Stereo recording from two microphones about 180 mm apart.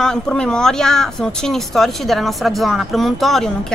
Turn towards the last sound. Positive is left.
turn(degrees=0)  # may be behind; listen again after turning